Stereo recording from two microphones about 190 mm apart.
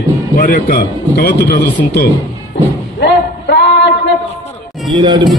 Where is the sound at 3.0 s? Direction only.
60° left (ahead or behind).